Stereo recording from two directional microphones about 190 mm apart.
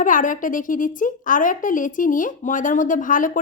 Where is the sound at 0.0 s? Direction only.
45° left (ahead or behind).